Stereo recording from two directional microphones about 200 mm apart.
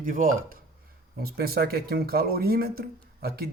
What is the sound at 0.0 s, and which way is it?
Speech, 45° right (ahead or behind).